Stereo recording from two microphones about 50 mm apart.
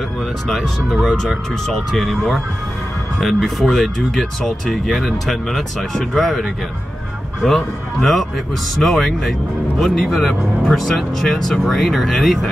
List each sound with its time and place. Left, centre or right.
0.5 s speech: centre
1.7 s speech: centre
7.4 s speech: centre